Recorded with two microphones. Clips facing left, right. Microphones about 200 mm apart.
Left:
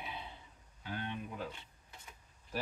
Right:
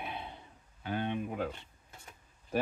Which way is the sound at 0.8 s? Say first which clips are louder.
Right 7 dB; 60° right (ahead or behind).